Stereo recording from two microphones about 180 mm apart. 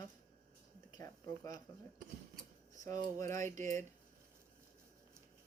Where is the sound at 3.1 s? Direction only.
15° left (ahead or behind).